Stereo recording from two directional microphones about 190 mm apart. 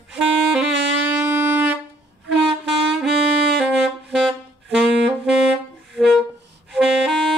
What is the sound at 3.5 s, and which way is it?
Saxophone, centre (ahead or behind).